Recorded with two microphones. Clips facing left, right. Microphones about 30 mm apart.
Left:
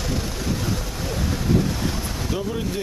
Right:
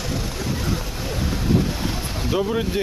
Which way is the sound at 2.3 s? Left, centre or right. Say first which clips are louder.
Right 6 dB; right.